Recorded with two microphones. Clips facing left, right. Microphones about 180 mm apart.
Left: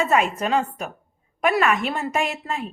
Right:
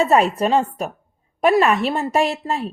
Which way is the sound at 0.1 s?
35° right (ahead or behind).